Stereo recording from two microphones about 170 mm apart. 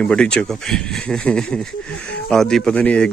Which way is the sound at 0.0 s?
5° left (ahead or behind).